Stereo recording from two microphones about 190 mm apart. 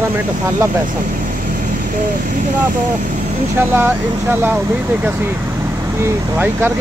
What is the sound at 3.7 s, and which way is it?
Speech, 10° right (ahead or behind).